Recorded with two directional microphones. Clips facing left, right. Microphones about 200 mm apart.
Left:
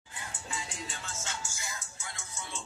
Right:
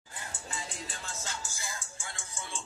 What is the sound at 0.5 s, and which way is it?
Music, 35° right (ahead or behind).